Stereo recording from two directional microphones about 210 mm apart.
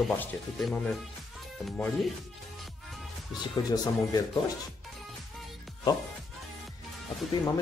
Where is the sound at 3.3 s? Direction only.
20° left (ahead or behind).